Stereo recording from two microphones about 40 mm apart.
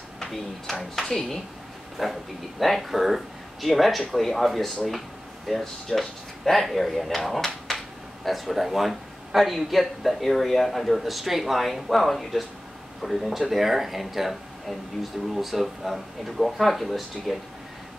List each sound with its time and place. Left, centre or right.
0.3 s speech: centre
2.0 s a man's voice: centre